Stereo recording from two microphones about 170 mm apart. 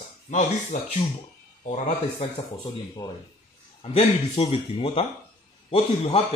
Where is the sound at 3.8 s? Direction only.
40° left (ahead or behind).